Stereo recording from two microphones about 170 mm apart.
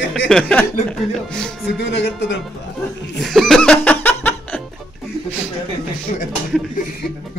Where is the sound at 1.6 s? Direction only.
90° left.